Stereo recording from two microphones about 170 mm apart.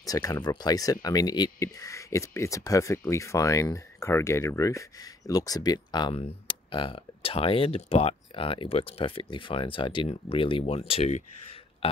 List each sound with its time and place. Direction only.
0.0 s speech: 20° left (ahead or behind); by 11.2 s 40° left (ahead or behind)
11.8 s burping: 35° left (ahead or behind)